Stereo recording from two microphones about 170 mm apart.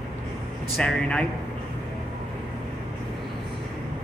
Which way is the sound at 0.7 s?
5° left (ahead or behind).